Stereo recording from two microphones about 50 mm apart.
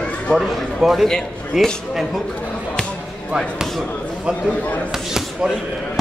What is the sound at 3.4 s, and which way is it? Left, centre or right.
Speech, centre.